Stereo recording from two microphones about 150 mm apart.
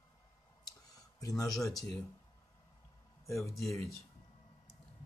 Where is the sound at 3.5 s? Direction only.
20° left (ahead or behind).